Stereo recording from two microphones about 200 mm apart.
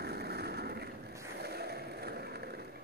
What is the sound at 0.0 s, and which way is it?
Vehicle, 55° right (ahead or behind).